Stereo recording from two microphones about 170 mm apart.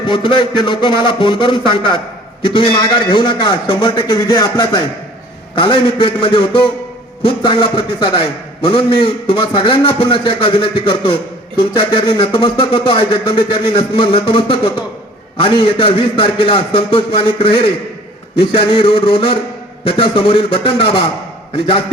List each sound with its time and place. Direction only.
0.0 s a man's voice: 25° left (ahead or behind)